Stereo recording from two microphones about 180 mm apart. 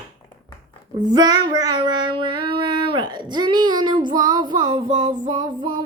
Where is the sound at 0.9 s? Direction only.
20° right (ahead or behind).